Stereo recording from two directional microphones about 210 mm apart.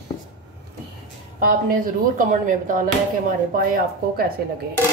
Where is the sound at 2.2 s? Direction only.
40° right (ahead or behind).